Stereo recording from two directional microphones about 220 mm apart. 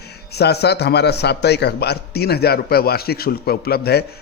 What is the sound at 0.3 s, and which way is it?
A man's voice, 50° left (ahead or behind).